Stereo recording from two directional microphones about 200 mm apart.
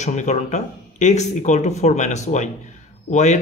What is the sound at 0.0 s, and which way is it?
Speech, 35° left (ahead or behind).